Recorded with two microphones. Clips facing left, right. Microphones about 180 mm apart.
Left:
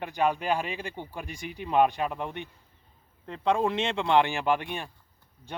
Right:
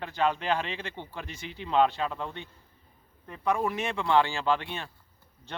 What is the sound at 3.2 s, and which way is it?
A man's voice, 25° left (ahead or behind).